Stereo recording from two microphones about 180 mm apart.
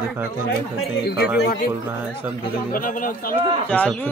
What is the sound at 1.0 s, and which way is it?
Speech, 60° left (ahead or behind).